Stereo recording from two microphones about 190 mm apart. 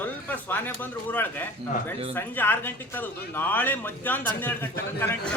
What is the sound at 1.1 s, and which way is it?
Speech, 10° left (ahead or behind).